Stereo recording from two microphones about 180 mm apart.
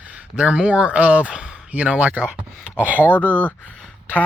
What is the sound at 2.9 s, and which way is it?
Speech, 10° left (ahead or behind).